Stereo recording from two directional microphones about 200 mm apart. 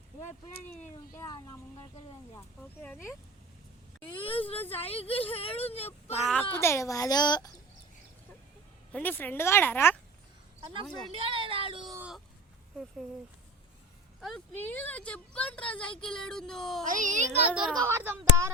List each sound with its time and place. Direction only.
1.1 s speech: 15° left (ahead or behind)
2.8 s speech: 10° left (ahead or behind)
4.2 s speech: 25° left (ahead or behind)
6.5 s speech: 10° left (ahead or behind)
8.9 s speech: 5° left (ahead or behind)
11.1 s speech: 25° right (ahead or behind)
11.9 s speech: 5° right (ahead or behind)
14.2 s speech: centre (ahead or behind)
16.8 s a child's voice: 40° right (ahead or behind)
17.5 s speech: centre (ahead or behind)
17.7 s speech: 15° right (ahead or behind)